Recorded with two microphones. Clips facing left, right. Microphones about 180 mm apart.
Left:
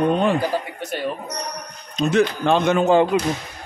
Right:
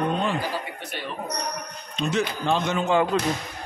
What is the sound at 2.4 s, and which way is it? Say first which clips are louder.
Speech: left 7 dB; 60° left (ahead or behind).